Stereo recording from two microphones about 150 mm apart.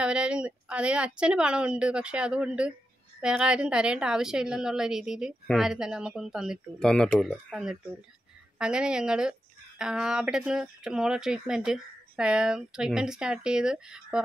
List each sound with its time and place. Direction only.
0.0 s a woman's voice: 5° right (ahead or behind)